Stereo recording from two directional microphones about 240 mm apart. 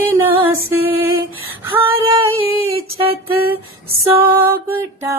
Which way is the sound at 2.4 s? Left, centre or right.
Right.